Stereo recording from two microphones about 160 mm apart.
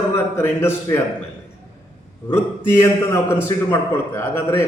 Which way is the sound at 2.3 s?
15° left (ahead or behind).